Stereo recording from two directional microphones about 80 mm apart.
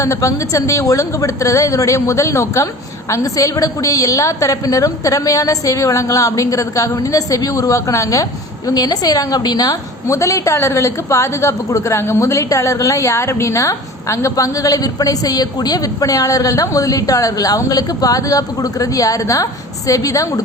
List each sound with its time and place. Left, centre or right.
0.0 s a woman's voice: left